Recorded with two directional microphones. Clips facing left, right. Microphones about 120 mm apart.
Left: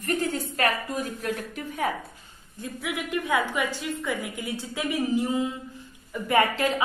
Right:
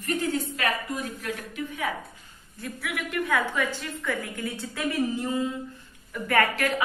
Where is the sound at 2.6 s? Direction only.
20° left (ahead or behind).